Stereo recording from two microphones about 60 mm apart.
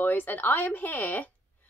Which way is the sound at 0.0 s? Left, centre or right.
Left.